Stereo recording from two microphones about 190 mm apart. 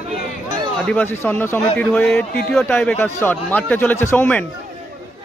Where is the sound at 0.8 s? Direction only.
10° left (ahead or behind).